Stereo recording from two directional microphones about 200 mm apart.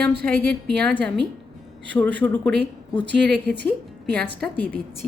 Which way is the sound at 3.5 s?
60° right (ahead or behind).